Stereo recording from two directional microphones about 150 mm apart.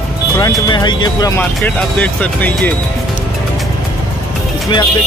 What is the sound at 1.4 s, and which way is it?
Speech, 10° left (ahead or behind).